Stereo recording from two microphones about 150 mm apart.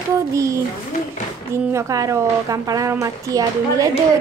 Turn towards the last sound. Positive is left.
turn(degrees=-20)  # may be behind; listen again after turning